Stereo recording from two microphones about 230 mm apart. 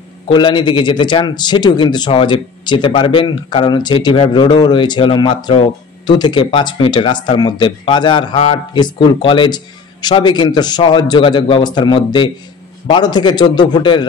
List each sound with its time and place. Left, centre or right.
0.3 s speech: centre